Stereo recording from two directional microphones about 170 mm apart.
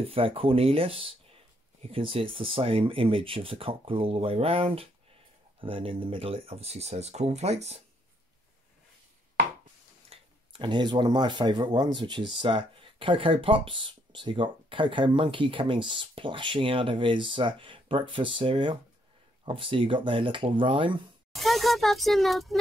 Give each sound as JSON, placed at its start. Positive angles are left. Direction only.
{"t": 0.0, "sound": "speech", "side_deg": -35}
{"t": 10.0, "sound": "speech", "side_deg": -30}
{"t": 21.3, "sound": "a child's voice", "side_deg": 0}